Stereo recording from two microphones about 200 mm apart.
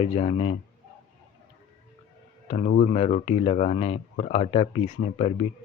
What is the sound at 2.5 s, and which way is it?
Speech, 40° left (ahead or behind).